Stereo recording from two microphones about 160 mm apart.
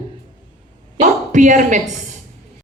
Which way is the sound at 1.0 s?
50° right (ahead or behind).